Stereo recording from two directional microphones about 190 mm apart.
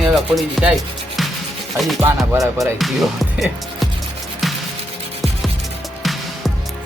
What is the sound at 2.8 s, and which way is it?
Music, centre (ahead or behind).